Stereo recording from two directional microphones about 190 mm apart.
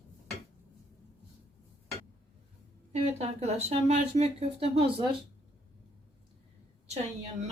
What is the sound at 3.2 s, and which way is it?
Speech, 35° right (ahead or behind).